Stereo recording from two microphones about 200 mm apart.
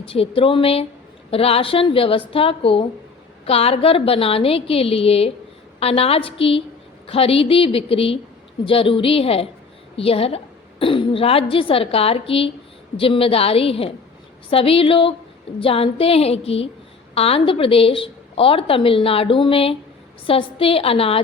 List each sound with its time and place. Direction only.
0.0 s speech: 30° left (ahead or behind)